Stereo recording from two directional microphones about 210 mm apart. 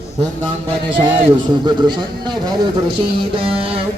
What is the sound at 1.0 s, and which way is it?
A man's voice, 25° right (ahead or behind).